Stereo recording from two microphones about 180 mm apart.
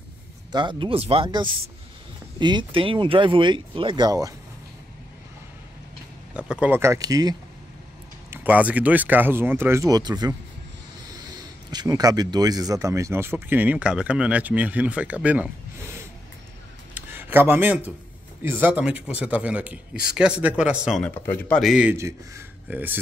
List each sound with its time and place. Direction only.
0.5 s speech: 25° right (ahead or behind)
6.3 s speech: 5° right (ahead or behind)
8.3 s speech: 10° right (ahead or behind)
11.7 s a man's voice: 20° right (ahead or behind); by 21.9 s 5° right (ahead or behind)
21.9 s speech: 15° right (ahead or behind)